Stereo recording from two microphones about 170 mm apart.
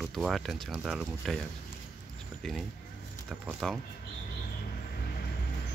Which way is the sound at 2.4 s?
Centre (ahead or behind).